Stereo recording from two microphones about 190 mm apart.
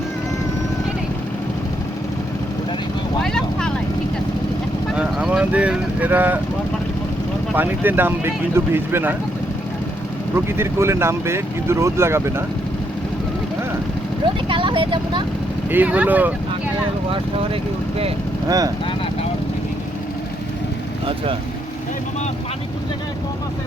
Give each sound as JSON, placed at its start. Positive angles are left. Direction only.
{"t": 3.2, "sound": "vehicle", "side_deg": 5}
{"t": 4.9, "sound": "speech", "side_deg": -5}
{"t": 7.5, "sound": "speech", "side_deg": -10}
{"t": 10.3, "sound": "speech", "side_deg": -15}
{"t": 14.4, "sound": "speech", "side_deg": -25}
{"t": 15.7, "sound": "speech", "side_deg": -10}
{"t": 18.4, "sound": "speech", "side_deg": -20}